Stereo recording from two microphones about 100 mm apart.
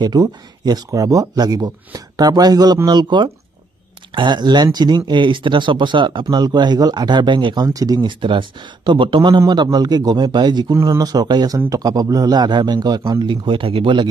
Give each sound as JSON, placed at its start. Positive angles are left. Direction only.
{"t": 0.0, "sound": "speech", "side_deg": -45}
{"t": 7.6, "sound": "speech", "side_deg": -40}
{"t": 8.2, "sound": "speech", "side_deg": -55}
{"t": 10.7, "sound": "speech", "side_deg": -30}
{"t": 11.1, "sound": "speech", "side_deg": -45}